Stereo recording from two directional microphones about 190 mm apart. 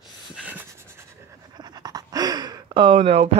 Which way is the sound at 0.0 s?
5° right (ahead or behind).